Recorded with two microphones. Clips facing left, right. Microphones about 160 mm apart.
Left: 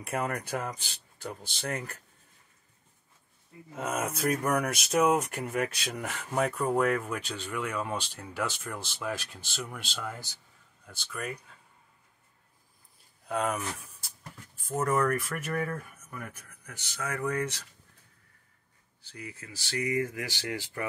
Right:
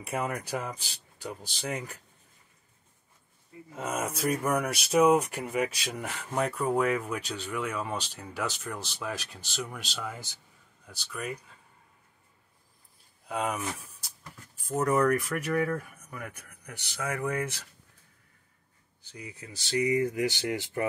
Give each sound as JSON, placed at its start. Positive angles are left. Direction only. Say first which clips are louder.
{"t": 0.0, "sound": "speech", "louder": "even", "side_deg": 0}
{"t": 3.7, "sound": "speech", "louder": "even", "side_deg": 5}
{"t": 8.8, "sound": "speech", "louder": "left 1 dB", "side_deg": 5}
{"t": 13.3, "sound": "speech", "louder": "left 1 dB", "side_deg": -5}
{"t": 19.1, "sound": "speech", "louder": "even", "side_deg": -20}